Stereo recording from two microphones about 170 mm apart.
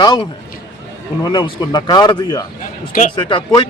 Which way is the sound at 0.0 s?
25° left (ahead or behind).